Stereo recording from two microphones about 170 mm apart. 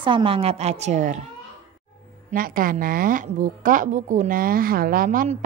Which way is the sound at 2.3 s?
55° right (ahead or behind).